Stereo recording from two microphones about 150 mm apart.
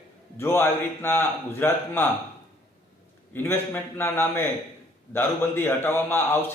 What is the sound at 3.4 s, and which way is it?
A man's voice, 15° left (ahead or behind).